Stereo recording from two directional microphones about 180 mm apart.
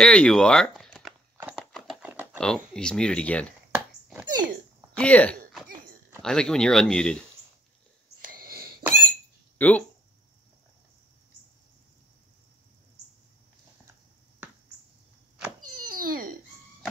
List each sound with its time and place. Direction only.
0.0 s speech: 5° left (ahead or behind)
1.5 s horse: centre (ahead or behind)
2.3 s speech: 5° left (ahead or behind)
3.7 s dog: 10° right (ahead or behind)
4.9 s speech: 5° left (ahead or behind)
8.4 s a sound: 55° right (ahead or behind)
9.6 s speech: 10° left (ahead or behind)
15.8 s cat: 50° right (ahead or behind)